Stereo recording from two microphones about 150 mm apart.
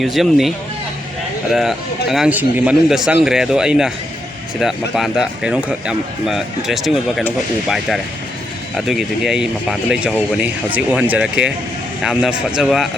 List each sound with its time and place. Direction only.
0.0 s speech: centre (ahead or behind)
8.7 s speech: centre (ahead or behind)